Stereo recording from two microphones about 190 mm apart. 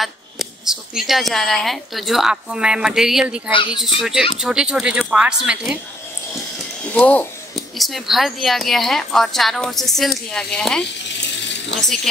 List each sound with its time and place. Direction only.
0.0 s speech: centre (ahead or behind)
6.9 s speech: 5° left (ahead or behind)
11.1 s water: 70° left (ahead or behind)
11.8 s speech: centre (ahead or behind)